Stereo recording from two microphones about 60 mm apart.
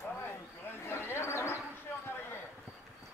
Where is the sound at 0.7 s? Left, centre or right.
Left.